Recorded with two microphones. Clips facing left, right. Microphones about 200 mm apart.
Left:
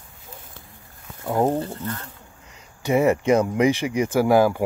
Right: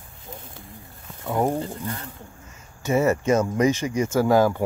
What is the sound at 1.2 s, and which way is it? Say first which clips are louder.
Speech: left 2 dB; 20° left (ahead or behind).